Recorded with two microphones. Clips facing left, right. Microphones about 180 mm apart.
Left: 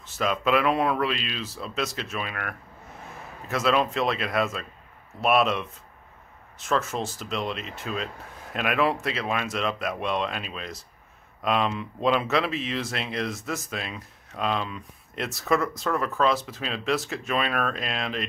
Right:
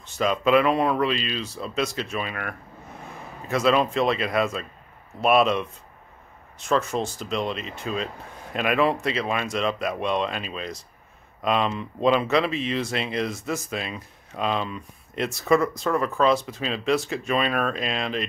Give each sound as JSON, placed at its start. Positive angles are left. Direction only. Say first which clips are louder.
{"t": 0.0, "sound": "speech", "louder": "right 3 dB", "side_deg": 5}